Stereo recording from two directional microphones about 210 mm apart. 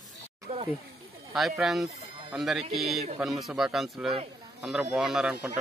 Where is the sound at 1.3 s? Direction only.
Centre (ahead or behind).